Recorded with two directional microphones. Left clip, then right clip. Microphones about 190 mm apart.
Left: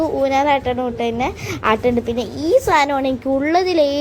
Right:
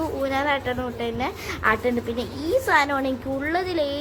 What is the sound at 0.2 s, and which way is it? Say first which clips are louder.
A woman's voice: left 7 dB; 25° left (ahead or behind).